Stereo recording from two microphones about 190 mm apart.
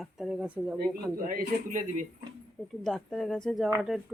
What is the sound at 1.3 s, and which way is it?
Speech, 45° right (ahead or behind).